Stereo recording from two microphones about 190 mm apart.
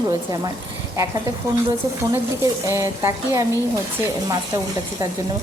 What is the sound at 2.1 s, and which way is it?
A woman's voice, 15° right (ahead or behind).